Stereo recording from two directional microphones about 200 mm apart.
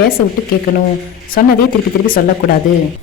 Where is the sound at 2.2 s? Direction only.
45° left (ahead or behind).